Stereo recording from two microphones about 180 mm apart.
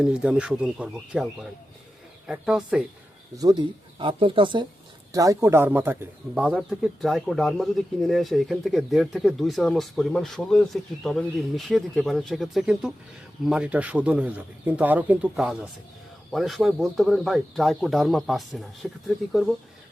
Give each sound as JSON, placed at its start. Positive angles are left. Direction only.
{"t": 0.0, "sound": "speech", "side_deg": -5}
{"t": 3.3, "sound": "speech", "side_deg": -25}